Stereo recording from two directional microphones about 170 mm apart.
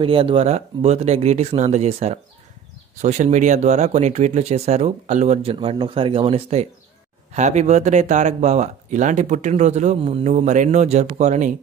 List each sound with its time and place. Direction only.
0.0 s speech: 30° right (ahead or behind)